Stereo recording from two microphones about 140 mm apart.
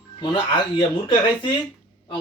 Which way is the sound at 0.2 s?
35° left (ahead or behind).